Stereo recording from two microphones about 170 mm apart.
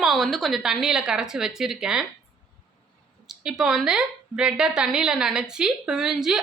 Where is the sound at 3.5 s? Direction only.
5° right (ahead or behind).